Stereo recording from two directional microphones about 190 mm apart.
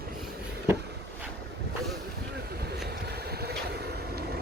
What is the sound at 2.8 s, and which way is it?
Vehicle, 55° right (ahead or behind).